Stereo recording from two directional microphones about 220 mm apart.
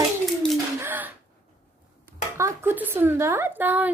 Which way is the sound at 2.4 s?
10° right (ahead or behind).